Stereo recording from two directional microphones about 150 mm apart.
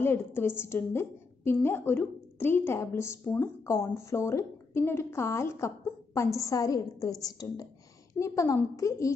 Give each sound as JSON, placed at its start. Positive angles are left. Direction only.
{"t": 0.0, "sound": "a woman's voice", "side_deg": 15}